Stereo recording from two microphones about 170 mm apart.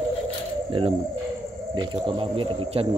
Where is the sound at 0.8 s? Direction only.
30° right (ahead or behind).